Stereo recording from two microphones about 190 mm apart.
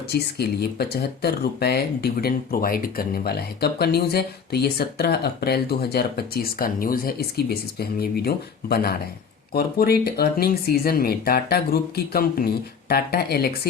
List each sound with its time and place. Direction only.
0.1 s speech: 55° left (ahead or behind)